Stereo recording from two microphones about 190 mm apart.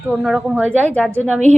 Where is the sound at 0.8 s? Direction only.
10° left (ahead or behind).